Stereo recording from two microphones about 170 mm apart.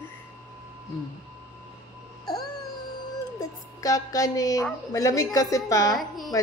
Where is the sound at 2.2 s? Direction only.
25° left (ahead or behind).